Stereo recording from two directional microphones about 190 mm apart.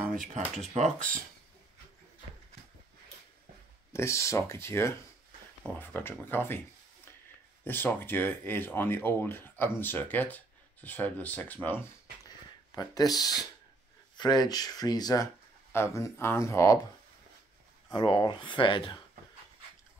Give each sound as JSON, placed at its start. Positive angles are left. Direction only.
{"t": 0.1, "sound": "speech", "side_deg": -35}
{"t": 3.9, "sound": "speech", "side_deg": 15}
{"t": 7.6, "sound": "speech", "side_deg": 10}
{"t": 12.7, "sound": "speech", "side_deg": 20}
{"t": 17.9, "sound": "speech", "side_deg": 25}